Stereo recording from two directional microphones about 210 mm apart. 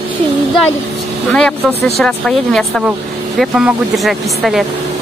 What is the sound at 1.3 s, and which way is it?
Speech, 5° left (ahead or behind).